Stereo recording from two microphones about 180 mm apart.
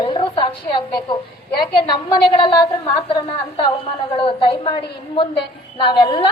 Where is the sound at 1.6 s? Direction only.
25° left (ahead or behind).